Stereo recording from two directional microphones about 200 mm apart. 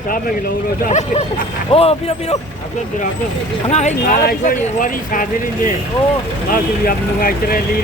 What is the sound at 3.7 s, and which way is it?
Speech, 35° left (ahead or behind).